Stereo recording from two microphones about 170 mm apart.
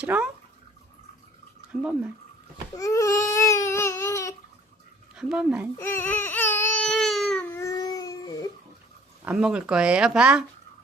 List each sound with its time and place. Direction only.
0.0 s speech: 5° right (ahead or behind)
1.7 s speech: 5° right (ahead or behind)
2.7 s baby cry: 20° left (ahead or behind)
5.1 s speech: 5° right (ahead or behind)
5.7 s baby cry: 15° left (ahead or behind)
7.5 s dog: 20° left (ahead or behind)
9.2 s speech: 5° right (ahead or behind)